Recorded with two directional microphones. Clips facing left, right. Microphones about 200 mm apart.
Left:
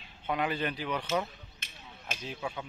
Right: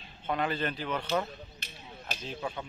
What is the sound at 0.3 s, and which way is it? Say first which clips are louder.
Speech: even; 10° left (ahead or behind).